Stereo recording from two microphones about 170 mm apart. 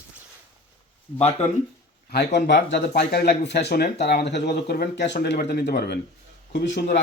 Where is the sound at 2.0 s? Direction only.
80° left.